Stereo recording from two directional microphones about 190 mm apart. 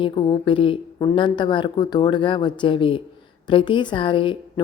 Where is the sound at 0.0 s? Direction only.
25° left (ahead or behind).